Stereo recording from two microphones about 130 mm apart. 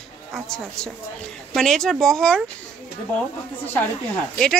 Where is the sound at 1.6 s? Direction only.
5° left (ahead or behind).